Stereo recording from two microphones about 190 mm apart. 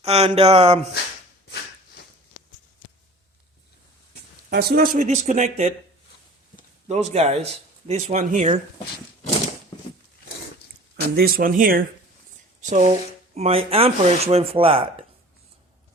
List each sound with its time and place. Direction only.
0.0 s speech: 35° right (ahead or behind)
4.4 s speech: 55° right (ahead or behind)
6.8 s speech: 35° right (ahead or behind)
11.1 s speech: 50° right (ahead or behind); by 14.8 s 30° right (ahead or behind)